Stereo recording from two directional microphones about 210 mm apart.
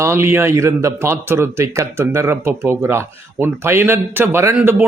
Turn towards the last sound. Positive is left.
turn(degrees=-10)  # may be behind; listen again after turning